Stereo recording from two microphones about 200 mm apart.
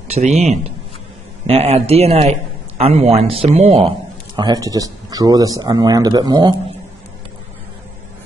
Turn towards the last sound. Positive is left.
turn(degrees=-20)  # may be behind; listen again after turning